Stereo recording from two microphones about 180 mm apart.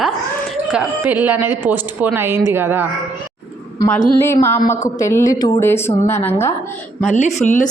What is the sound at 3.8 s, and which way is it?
A woman's voice, 10° left (ahead or behind).